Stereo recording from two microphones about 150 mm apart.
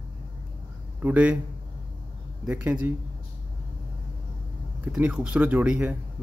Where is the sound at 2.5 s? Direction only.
10° right (ahead or behind).